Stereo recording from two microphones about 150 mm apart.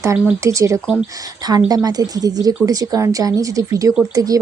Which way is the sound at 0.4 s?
20° right (ahead or behind).